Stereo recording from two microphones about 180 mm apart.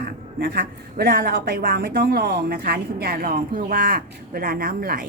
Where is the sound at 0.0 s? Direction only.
65° right (ahead or behind).